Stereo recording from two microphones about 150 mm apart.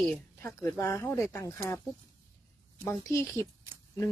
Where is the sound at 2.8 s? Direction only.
15° left (ahead or behind).